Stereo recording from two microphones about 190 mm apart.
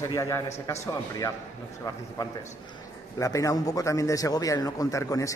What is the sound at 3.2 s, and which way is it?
A man's voice, 15° left (ahead or behind).